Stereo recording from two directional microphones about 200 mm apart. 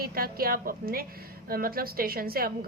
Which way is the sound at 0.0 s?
50° right (ahead or behind).